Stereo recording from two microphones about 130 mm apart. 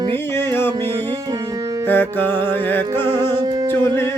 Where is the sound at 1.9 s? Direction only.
15° left (ahead or behind).